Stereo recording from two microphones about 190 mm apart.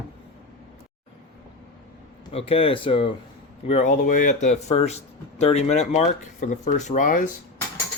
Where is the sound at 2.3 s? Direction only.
30° left (ahead or behind).